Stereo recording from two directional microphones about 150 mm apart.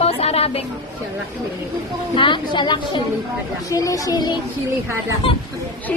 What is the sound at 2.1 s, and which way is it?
A woman's voice, 35° left (ahead or behind).